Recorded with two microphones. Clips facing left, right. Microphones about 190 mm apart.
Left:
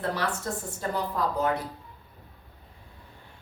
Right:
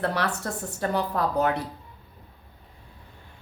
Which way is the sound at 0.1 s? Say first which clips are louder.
Right 2 dB; 70° right (ahead or behind).